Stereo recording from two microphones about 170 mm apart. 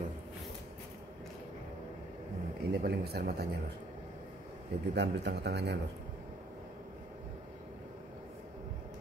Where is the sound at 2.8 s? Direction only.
70° right (ahead or behind).